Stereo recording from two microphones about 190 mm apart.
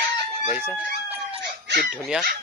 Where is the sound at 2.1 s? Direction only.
5° right (ahead or behind).